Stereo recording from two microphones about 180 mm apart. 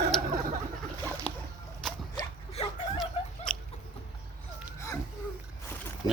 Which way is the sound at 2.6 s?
35° left (ahead or behind).